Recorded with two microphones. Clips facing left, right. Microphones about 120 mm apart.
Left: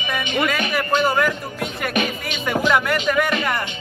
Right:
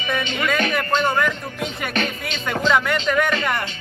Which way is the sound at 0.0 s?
15° left (ahead or behind).